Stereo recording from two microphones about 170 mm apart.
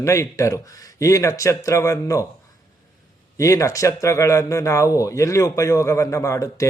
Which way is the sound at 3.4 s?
20° left (ahead or behind).